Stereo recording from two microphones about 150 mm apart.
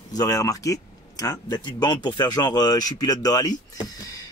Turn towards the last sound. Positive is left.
turn(degrees=25)  # may be behind; listen again after turning